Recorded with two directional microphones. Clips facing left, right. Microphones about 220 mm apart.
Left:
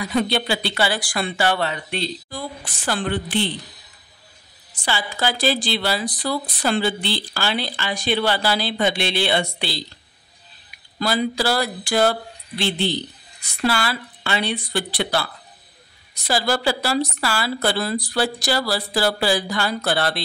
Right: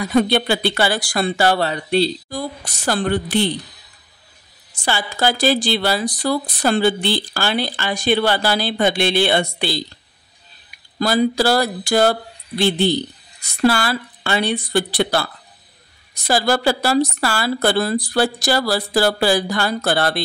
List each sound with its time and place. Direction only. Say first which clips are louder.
0.0 s speech: right 5 dB; 50° right (ahead or behind)
4.7 s speech: right 3 dB; 45° right (ahead or behind)
11.0 s speech: right 5 dB; 40° right (ahead or behind)
16.3 s speech: right 4 dB; 50° right (ahead or behind)